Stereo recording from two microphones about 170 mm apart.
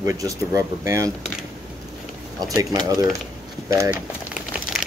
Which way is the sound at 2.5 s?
20° right (ahead or behind).